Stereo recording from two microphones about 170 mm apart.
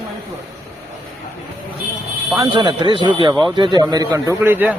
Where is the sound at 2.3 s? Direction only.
25° right (ahead or behind).